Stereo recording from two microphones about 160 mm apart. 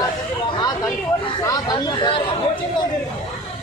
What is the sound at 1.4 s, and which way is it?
Speech, 25° left (ahead or behind).